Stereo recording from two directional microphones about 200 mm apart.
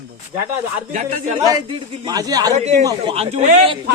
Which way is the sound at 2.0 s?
20° right (ahead or behind).